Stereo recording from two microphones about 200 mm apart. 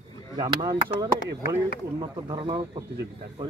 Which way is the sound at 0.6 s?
20° right (ahead or behind).